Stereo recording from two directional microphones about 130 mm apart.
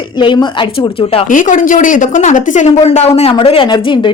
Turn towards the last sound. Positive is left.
turn(degrees=40)  # may be behind; listen again after turning